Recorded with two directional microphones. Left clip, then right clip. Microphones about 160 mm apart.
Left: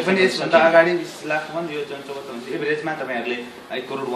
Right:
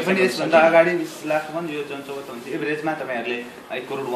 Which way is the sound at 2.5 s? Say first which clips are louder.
Left 1 dB; 15° right (ahead or behind).